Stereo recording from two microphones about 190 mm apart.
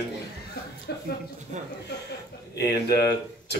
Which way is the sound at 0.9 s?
60° left (ahead or behind).